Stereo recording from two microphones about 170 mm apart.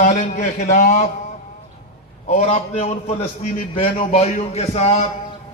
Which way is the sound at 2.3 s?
45° left (ahead or behind).